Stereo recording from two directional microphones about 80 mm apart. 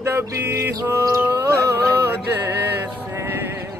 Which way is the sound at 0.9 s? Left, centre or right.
Right.